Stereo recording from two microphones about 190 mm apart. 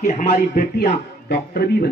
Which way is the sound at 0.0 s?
35° left (ahead or behind).